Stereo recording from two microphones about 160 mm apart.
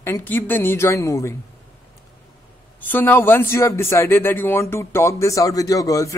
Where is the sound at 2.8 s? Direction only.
10° left (ahead or behind).